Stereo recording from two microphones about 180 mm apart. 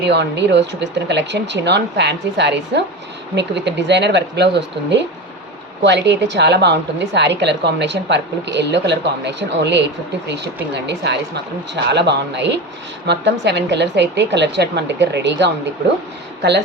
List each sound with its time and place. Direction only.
0.0 s a woman's voice: 70° right (ahead or behind)